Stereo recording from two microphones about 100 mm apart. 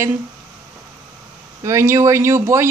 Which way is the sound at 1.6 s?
30° right (ahead or behind).